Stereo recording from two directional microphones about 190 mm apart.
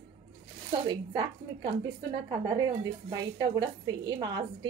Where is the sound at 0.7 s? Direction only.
25° right (ahead or behind).